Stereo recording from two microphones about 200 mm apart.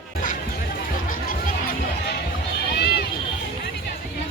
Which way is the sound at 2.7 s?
55° left (ahead or behind).